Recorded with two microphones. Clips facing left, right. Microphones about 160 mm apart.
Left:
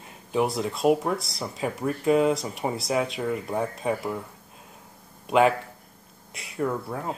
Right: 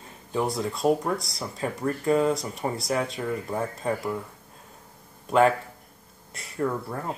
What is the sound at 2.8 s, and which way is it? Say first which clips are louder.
Speech: left 3 dB; 5° left (ahead or behind).